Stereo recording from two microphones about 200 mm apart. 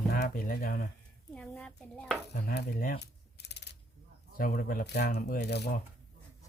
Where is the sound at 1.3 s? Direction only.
5° left (ahead or behind).